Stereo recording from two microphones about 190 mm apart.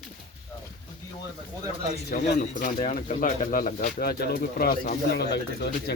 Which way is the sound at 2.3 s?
40° left (ahead or behind).